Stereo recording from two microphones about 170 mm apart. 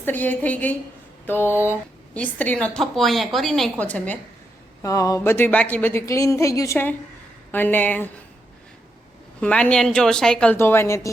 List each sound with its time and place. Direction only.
0.0 s speech: 10° left (ahead or behind)
4.8 s speech: 20° left (ahead or behind)
9.4 s speech: 10° left (ahead or behind)